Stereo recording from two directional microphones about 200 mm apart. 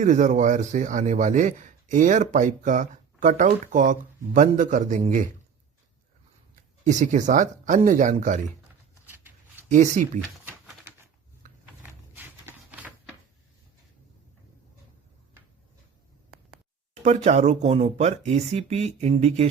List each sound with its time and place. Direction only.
0.0 s speech: 40° right (ahead or behind)
6.8 s speech: 40° right (ahead or behind)
9.6 s speech: 40° right (ahead or behind)
11.8 s a sound: 10° right (ahead or behind)
17.0 s speech: 35° right (ahead or behind)